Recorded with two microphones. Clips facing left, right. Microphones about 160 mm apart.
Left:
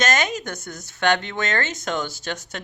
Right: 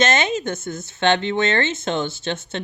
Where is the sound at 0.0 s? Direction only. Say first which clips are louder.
Right 3 dB; 25° right (ahead or behind).